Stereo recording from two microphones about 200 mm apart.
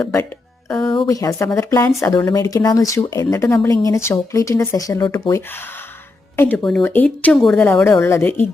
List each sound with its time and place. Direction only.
0.0 s speech: 15° left (ahead or behind)
0.7 s music: 5° left (ahead or behind)
1.0 s speech: 15° left (ahead or behind)